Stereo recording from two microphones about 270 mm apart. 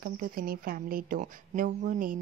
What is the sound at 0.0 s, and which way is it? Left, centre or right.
A woman's voice, right.